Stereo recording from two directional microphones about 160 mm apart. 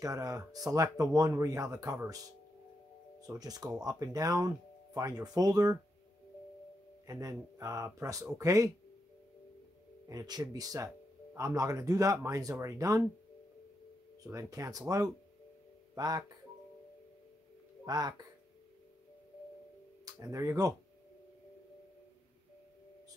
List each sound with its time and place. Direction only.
0.0 s speech: 20° right (ahead or behind)
3.2 s speech: 25° right (ahead or behind)
7.1 s speech: 20° right (ahead or behind)
10.0 s speech: 25° right (ahead or behind)
14.2 s speech: 20° right (ahead or behind)
17.8 s speech: 25° right (ahead or behind)
20.2 s speech: 20° right (ahead or behind)